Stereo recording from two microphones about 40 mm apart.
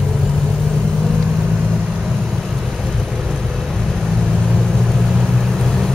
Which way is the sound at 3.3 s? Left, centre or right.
Centre.